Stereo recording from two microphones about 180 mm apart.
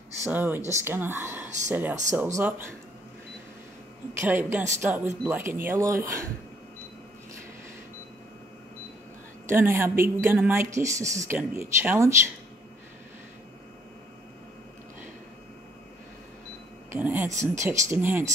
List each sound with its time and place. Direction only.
0.2 s a woman's voice: 10° right (ahead or behind)
4.2 s a woman's voice: 10° right (ahead or behind)
9.5 s a woman's voice: 15° right (ahead or behind)
16.9 s a woman's voice: 10° right (ahead or behind)